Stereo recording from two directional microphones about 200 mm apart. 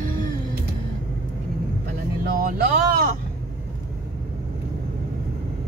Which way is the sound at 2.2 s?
50° right (ahead or behind).